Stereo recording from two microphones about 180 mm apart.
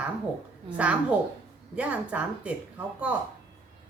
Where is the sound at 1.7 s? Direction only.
5° right (ahead or behind).